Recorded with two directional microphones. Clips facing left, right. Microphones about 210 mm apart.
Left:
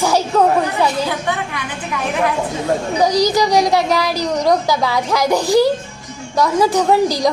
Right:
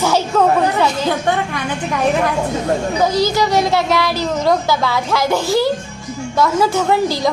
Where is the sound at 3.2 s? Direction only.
15° left (ahead or behind).